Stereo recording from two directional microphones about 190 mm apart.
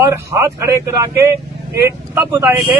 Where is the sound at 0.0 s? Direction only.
15° right (ahead or behind).